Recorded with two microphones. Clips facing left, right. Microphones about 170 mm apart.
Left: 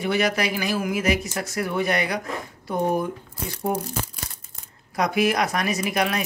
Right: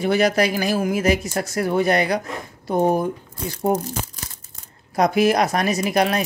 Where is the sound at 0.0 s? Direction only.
40° right (ahead or behind).